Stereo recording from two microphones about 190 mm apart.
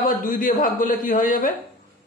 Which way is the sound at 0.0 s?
45° left (ahead or behind).